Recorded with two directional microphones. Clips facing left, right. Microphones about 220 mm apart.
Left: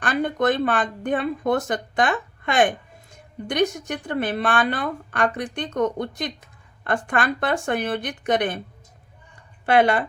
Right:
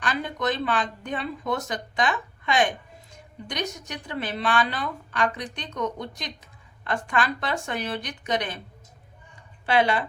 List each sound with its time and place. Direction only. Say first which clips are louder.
0.0 s speech: left 6 dB; 50° left (ahead or behind)
9.6 s speech: left 4 dB; 50° left (ahead or behind)